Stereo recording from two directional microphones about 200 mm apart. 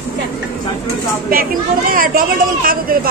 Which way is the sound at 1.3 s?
45° right (ahead or behind).